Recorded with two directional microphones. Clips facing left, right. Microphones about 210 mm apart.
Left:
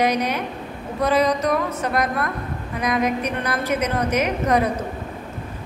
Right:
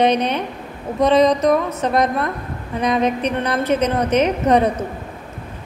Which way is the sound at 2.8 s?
30° right (ahead or behind).